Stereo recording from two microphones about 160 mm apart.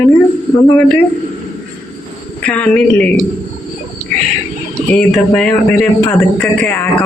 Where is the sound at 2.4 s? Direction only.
10° left (ahead or behind).